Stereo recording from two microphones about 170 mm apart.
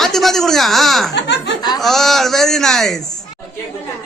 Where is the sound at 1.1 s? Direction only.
90° left.